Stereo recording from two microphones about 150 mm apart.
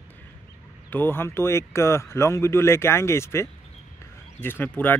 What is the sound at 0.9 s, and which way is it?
Speech, 15° left (ahead or behind).